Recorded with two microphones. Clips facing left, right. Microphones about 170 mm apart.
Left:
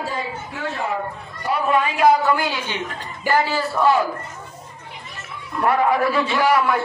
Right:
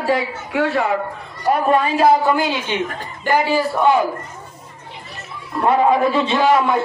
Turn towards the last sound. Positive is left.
turn(degrees=-20)  # may be behind; listen again after turning